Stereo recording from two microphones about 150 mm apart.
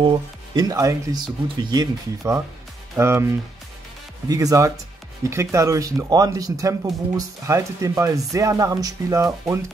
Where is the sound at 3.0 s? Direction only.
15° right (ahead or behind).